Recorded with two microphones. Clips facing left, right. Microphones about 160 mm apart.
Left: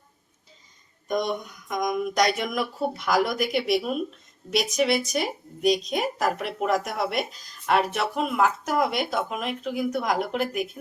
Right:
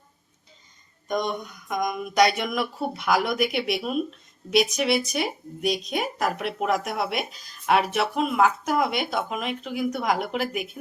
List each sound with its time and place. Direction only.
1.0 s speech: centre (ahead or behind)